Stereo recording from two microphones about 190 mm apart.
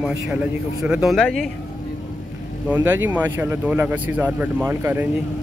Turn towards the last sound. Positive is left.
turn(degrees=-10)  # may be behind; listen again after turning